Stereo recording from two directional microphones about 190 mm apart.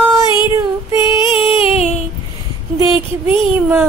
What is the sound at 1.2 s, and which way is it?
Music, 30° left (ahead or behind).